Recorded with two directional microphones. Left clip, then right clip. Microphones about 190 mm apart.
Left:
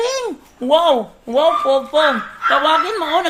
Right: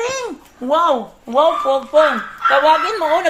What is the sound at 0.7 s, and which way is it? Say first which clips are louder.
A woman's voice: left 2 dB; 30° left (ahead or behind).